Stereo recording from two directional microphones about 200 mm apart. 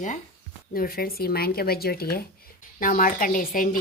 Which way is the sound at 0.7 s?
45° left (ahead or behind).